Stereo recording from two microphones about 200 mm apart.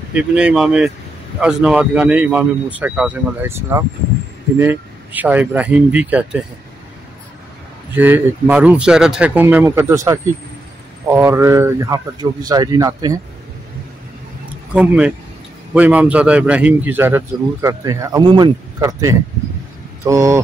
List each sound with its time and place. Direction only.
0.1 s a man's voice: 5° right (ahead or behind)
7.9 s a man's voice: 10° right (ahead or behind)
14.7 s a man's voice: 5° right (ahead or behind)